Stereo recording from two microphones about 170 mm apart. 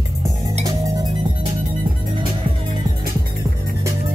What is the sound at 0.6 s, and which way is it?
Music, 20° right (ahead or behind).